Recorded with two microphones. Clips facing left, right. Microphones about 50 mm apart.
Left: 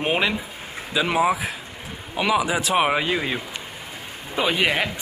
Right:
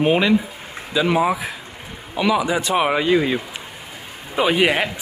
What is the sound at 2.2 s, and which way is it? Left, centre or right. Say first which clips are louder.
Speech: right 2 dB; centre.